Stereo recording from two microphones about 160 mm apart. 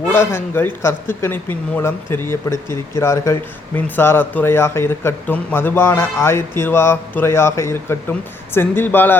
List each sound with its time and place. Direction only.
0.1 s speech: 15° left (ahead or behind)